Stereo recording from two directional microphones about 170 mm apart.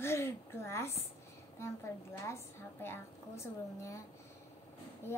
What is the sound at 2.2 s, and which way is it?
A woman's voice, 15° left (ahead or behind).